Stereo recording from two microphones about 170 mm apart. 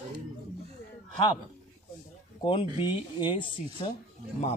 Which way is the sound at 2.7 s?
25° left (ahead or behind).